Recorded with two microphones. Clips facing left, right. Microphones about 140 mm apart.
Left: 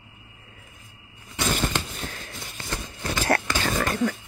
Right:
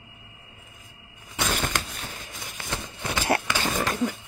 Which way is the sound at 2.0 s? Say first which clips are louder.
Left 2 dB; 15° right (ahead or behind).